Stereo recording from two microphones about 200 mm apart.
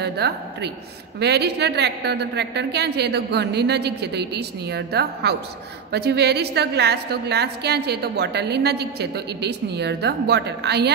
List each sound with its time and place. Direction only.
0.0 s a woman's voice: 55° right (ahead or behind)